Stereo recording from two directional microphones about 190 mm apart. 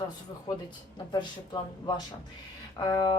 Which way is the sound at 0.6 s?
25° left (ahead or behind).